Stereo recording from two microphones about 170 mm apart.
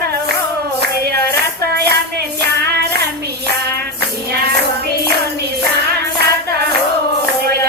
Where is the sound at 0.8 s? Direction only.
70° right (ahead or behind).